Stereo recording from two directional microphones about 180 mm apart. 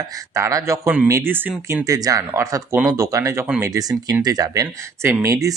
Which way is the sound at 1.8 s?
20° right (ahead or behind).